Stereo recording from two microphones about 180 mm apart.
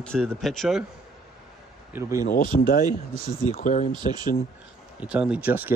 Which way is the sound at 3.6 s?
45° left (ahead or behind).